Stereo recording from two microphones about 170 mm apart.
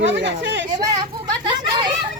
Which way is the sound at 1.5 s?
25° right (ahead or behind).